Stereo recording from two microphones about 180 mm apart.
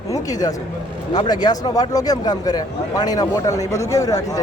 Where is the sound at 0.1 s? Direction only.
20° left (ahead or behind).